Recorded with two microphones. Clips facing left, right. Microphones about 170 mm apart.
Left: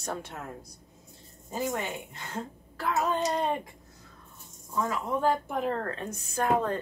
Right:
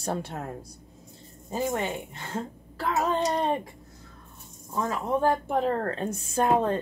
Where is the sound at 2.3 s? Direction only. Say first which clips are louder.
Right 4 dB; 30° right (ahead or behind).